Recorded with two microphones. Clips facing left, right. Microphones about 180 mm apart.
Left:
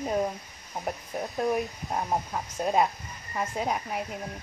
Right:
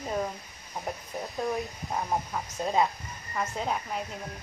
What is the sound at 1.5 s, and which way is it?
Speech, 15° left (ahead or behind).